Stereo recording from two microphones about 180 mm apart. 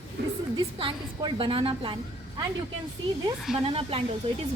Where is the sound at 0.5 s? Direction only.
25° right (ahead or behind).